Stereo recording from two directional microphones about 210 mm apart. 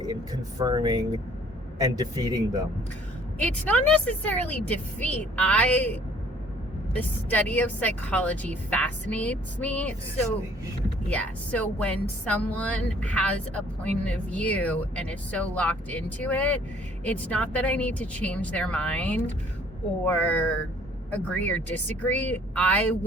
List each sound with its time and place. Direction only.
0.6 s speech: 20° right (ahead or behind)
3.3 s speech: 5° left (ahead or behind)
11.1 s speech: 5° left (ahead or behind)